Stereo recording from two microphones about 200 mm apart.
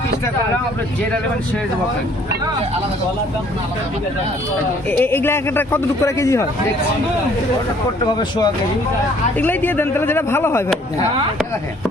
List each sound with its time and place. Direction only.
4.9 s a man's voice: 10° left (ahead or behind)
8.0 s speech: 20° left (ahead or behind)
9.4 s a man's voice: 10° left (ahead or behind)